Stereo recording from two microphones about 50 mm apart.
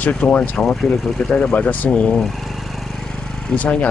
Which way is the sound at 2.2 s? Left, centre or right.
Centre.